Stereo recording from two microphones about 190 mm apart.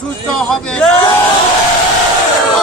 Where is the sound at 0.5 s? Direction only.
5° left (ahead or behind).